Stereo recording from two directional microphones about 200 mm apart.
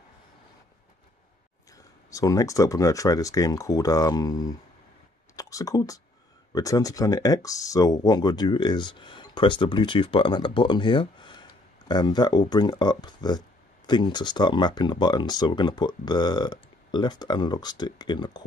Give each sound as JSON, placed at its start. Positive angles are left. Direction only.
{"t": 2.0, "sound": "speech", "side_deg": 15}
{"t": 5.3, "sound": "a sound", "side_deg": 15}
{"t": 6.5, "sound": "speech", "side_deg": 15}